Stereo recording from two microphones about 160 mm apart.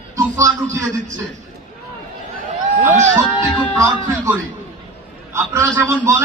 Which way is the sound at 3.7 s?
20° right (ahead or behind).